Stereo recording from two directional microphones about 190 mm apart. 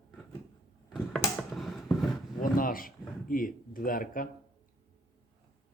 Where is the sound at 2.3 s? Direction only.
45° left (ahead or behind).